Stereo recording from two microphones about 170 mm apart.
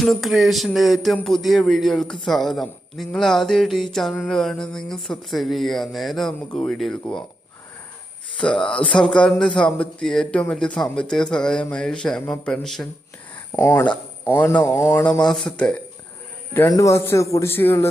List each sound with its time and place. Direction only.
0.0 s music: centre (ahead or behind)
8.4 s music: 5° left (ahead or behind)
13.5 s speech: 15° left (ahead or behind)
15.3 s music: 5° left (ahead or behind)
16.6 s speech: 20° left (ahead or behind)